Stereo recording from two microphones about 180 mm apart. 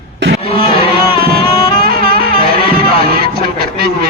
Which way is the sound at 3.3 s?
60° right (ahead or behind).